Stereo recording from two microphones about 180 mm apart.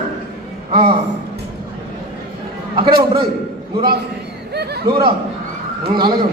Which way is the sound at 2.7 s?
25° right (ahead or behind).